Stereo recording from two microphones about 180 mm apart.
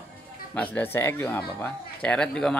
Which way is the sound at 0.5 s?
10° left (ahead or behind).